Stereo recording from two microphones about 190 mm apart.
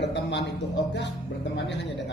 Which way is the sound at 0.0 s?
65° left (ahead or behind).